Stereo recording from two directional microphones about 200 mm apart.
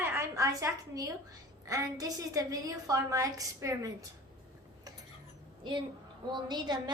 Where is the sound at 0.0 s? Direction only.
10° right (ahead or behind).